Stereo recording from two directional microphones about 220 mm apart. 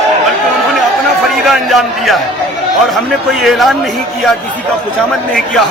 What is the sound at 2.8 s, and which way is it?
A man's voice, centre (ahead or behind).